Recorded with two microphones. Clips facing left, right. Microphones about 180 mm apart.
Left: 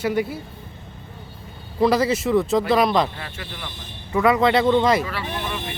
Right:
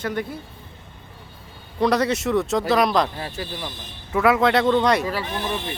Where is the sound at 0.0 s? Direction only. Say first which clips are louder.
Left 4 dB; 10° left (ahead or behind).